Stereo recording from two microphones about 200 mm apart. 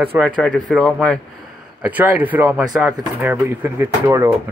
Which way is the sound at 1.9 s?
10° right (ahead or behind).